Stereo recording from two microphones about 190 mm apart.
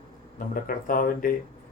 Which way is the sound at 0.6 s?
50° left (ahead or behind).